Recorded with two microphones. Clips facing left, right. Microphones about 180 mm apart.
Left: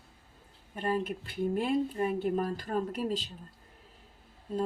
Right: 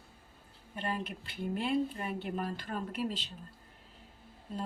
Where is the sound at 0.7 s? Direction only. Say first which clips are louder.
Left 6 dB; 45° left (ahead or behind).